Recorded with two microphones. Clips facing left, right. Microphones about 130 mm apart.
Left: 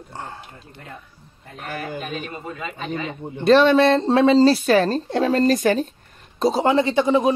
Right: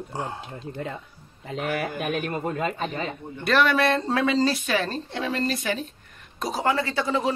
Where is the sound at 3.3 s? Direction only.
25° left (ahead or behind); by 5.8 s 45° left (ahead or behind).